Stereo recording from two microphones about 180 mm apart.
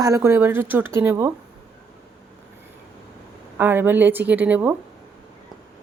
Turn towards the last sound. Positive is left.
turn(degrees=-10)  # may be behind; listen again after turning